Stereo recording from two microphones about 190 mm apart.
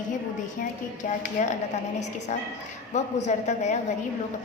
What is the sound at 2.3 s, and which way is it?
A woman's voice, 40° left (ahead or behind).